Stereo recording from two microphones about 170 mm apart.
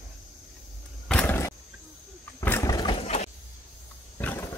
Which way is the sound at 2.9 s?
35° left (ahead or behind).